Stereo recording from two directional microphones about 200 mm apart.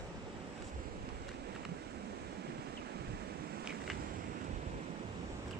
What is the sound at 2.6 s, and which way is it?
Wind, 55° right (ahead or behind).